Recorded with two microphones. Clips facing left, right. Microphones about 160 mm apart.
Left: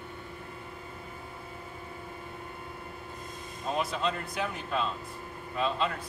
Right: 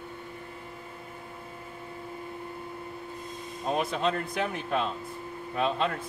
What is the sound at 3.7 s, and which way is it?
A man's voice, 55° right (ahead or behind).